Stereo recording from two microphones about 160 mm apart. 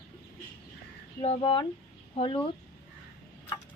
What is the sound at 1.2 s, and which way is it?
Speech, 40° left (ahead or behind).